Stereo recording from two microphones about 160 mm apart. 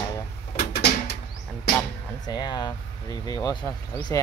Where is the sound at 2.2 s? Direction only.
25° left (ahead or behind).